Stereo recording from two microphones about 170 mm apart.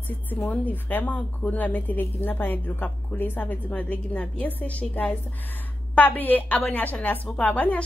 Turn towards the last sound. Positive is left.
turn(degrees=10)  # may be behind; listen again after turning